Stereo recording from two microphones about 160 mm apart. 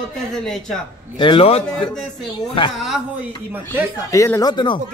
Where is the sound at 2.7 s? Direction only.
Centre (ahead or behind).